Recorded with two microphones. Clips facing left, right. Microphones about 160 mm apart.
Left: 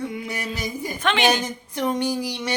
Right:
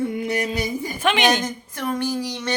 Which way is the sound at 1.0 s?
15° right (ahead or behind).